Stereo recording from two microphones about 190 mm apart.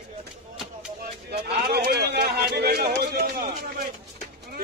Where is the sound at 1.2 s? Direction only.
60° right (ahead or behind).